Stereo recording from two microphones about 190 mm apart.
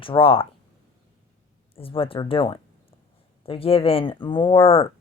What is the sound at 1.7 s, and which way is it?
Speech, 30° left (ahead or behind).